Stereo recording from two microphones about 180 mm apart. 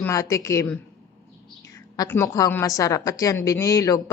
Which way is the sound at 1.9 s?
15° left (ahead or behind).